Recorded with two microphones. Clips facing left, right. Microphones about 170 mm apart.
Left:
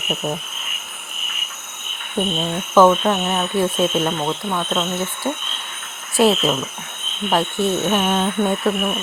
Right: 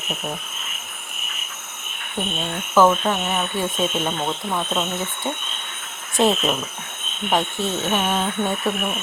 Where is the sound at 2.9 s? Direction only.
5° left (ahead or behind).